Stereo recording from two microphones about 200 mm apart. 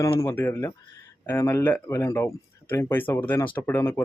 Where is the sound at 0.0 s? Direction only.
15° left (ahead or behind).